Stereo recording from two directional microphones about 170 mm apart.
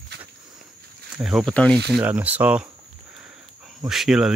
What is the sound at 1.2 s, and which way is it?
Speech, 5° right (ahead or behind).